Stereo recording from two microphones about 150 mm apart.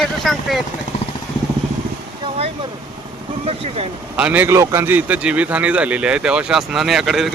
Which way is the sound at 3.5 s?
40° right (ahead or behind).